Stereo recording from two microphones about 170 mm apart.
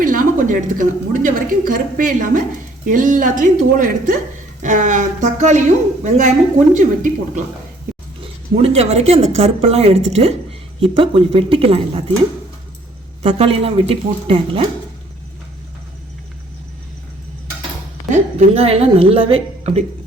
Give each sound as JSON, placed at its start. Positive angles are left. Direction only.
{"t": 0.0, "sound": "a woman's voice", "side_deg": -50}
{"t": 8.2, "sound": "speech", "side_deg": -35}
{"t": 13.2, "sound": "speech", "side_deg": -35}
{"t": 18.1, "sound": "speech", "side_deg": -40}